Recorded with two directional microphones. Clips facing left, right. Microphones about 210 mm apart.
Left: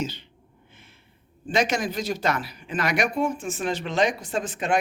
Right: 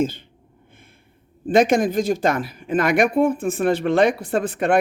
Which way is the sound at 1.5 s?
50° right (ahead or behind).